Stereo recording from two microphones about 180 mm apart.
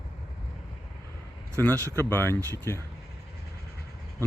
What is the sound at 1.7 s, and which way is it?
Speech, 15° right (ahead or behind).